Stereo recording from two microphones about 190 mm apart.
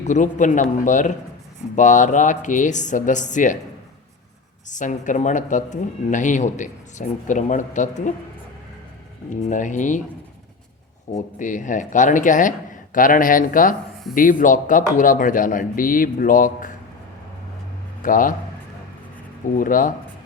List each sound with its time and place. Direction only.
0.0 s speech: 40° left (ahead or behind)
4.7 s speech: 40° left (ahead or behind)
9.3 s speech: 40° left (ahead or behind)
11.1 s speech: 40° left (ahead or behind)
18.0 s speech: 45° left (ahead or behind)
19.5 s speech: 45° left (ahead or behind)